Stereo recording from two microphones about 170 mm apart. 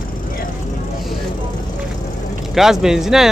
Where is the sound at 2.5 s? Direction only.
5° right (ahead or behind).